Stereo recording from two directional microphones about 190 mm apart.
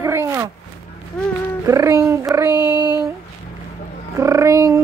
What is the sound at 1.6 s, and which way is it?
Speech, 15° right (ahead or behind).